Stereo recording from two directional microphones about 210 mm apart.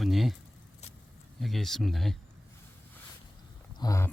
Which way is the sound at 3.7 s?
15° left (ahead or behind).